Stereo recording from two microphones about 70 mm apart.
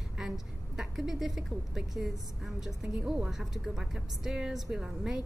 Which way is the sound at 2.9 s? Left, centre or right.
Centre.